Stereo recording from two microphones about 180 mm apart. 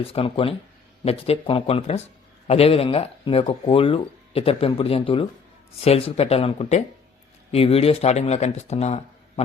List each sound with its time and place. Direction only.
0.0 s speech: 30° left (ahead or behind)